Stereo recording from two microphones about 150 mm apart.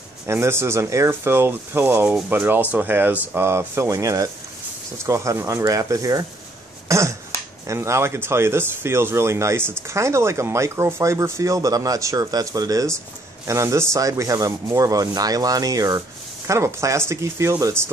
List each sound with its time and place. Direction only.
0.3 s speech: 15° right (ahead or behind)
6.9 s finger snapping: 20° right (ahead or behind)
7.6 s speech: 20° right (ahead or behind)